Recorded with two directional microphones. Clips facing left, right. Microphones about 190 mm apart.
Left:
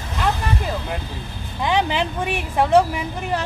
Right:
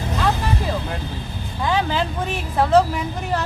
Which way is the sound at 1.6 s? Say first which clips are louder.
Left 1 dB; 20° left (ahead or behind).